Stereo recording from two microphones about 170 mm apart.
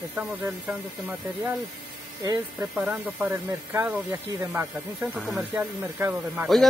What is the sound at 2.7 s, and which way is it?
Speech, 10° right (ahead or behind).